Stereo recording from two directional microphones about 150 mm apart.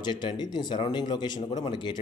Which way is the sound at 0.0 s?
30° left (ahead or behind).